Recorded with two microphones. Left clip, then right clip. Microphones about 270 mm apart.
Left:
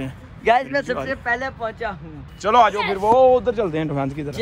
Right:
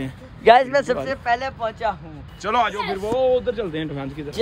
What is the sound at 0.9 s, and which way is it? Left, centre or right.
Speech, centre.